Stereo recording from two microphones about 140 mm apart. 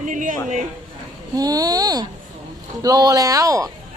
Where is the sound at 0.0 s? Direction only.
65° right (ahead or behind).